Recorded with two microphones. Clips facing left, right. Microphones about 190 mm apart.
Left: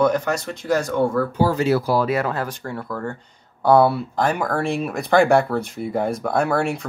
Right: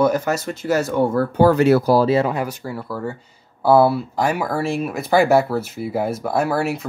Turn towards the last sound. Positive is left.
turn(degrees=-5)  # may be behind; listen again after turning